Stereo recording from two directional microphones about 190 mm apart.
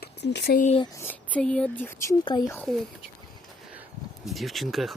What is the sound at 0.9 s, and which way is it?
Speech, 10° left (ahead or behind).